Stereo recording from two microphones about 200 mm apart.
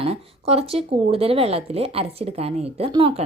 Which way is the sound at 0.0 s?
30° right (ahead or behind).